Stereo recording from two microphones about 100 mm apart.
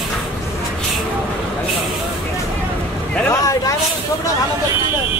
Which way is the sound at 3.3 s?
35° left (ahead or behind).